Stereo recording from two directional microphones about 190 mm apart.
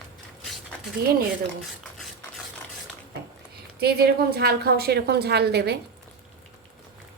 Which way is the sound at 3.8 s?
55° right (ahead or behind).